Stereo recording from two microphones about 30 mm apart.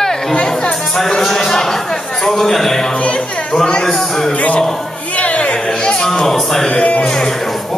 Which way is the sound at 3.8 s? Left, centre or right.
Centre.